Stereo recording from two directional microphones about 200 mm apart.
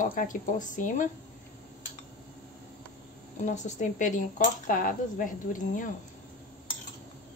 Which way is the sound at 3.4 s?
35° left (ahead or behind).